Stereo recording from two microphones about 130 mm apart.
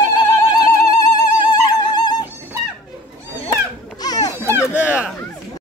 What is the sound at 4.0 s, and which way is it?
Children playing, 30° left (ahead or behind).